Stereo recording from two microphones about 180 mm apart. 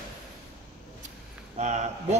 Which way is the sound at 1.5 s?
40° right (ahead or behind).